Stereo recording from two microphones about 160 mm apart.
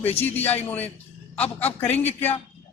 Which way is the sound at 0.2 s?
10° left (ahead or behind).